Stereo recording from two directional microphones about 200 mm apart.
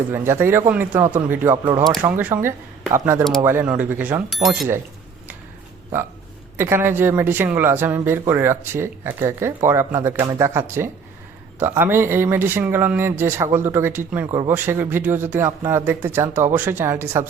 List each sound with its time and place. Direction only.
0.1 s speech: 10° right (ahead or behind)
6.6 s speech: 10° right (ahead or behind)